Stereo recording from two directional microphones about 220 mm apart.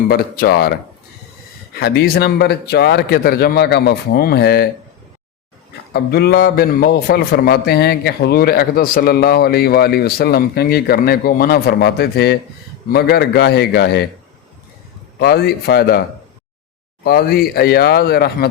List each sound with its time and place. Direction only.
0.1 s a man's voice: 45° left (ahead or behind)
1.8 s a man's voice: 45° left (ahead or behind)
5.9 s a man's voice: 45° left (ahead or behind)
15.2 s a man's voice: 45° left (ahead or behind)
17.0 s a man's voice: 45° left (ahead or behind)